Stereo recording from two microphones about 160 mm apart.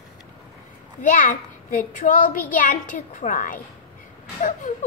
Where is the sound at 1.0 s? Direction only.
55° left (ahead or behind).